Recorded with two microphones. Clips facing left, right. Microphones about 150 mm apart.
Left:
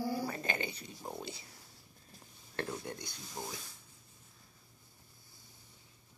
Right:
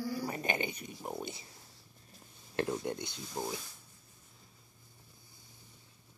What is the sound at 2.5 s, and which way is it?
Speech, 25° right (ahead or behind).